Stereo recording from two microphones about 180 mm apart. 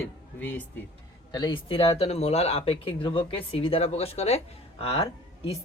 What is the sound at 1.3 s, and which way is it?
Speech, 25° left (ahead or behind).